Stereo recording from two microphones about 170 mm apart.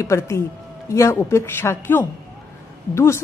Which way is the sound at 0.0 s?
15° left (ahead or behind).